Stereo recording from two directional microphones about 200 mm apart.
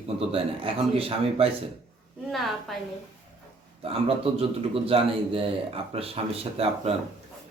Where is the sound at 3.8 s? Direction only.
30° right (ahead or behind).